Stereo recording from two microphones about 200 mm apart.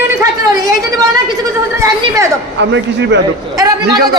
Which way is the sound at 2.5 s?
60° right (ahead or behind).